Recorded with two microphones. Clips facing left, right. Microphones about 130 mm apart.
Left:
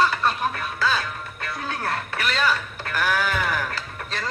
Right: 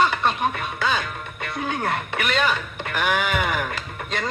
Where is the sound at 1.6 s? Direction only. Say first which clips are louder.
Right 4 dB; 20° right (ahead or behind).